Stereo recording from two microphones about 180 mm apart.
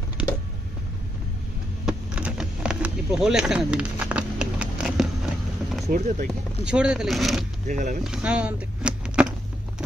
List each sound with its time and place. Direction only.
0.2 s a sound: 5° right (ahead or behind)
1.9 s a sound: 5° right (ahead or behind)
5.9 s speech: 45° right (ahead or behind)
6.6 s speech: 5° right (ahead or behind)
7.6 s speech: 45° right (ahead or behind)
8.0 s speech: 5° right (ahead or behind)